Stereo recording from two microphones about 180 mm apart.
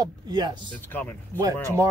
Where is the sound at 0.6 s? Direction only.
10° left (ahead or behind).